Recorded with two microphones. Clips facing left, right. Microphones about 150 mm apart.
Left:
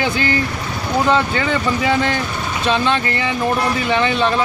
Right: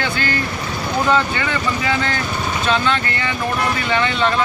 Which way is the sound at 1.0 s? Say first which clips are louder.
Left 1 dB; 20° left (ahead or behind).